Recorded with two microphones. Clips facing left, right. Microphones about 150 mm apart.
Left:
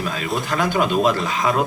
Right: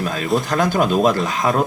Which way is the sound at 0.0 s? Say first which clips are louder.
Right 4 dB; 45° right (ahead or behind).